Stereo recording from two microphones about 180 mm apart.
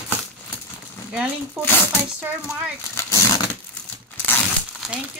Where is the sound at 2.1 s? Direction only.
10° right (ahead or behind).